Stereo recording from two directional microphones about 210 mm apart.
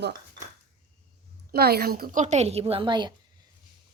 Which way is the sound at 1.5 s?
50° right (ahead or behind).